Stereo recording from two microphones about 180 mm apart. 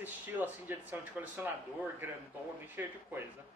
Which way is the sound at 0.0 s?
10° right (ahead or behind).